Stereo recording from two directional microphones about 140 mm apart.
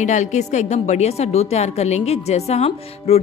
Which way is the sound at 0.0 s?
60° left (ahead or behind).